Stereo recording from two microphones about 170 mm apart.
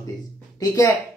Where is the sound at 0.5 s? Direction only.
20° left (ahead or behind).